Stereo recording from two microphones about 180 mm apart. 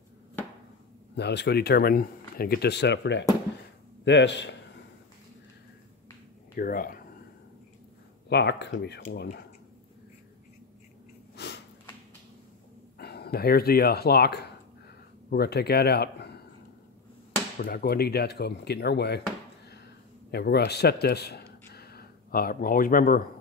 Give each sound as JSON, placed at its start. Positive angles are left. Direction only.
{"t": 1.1, "sound": "speech", "side_deg": 70}
{"t": 6.5, "sound": "speech", "side_deg": 50}
{"t": 8.3, "sound": "speech", "side_deg": 70}
{"t": 11.3, "sound": "sniff", "side_deg": 70}
{"t": 13.0, "sound": "speech", "side_deg": 60}
{"t": 17.6, "sound": "speech", "side_deg": 55}
{"t": 20.2, "sound": "a man's voice", "side_deg": 65}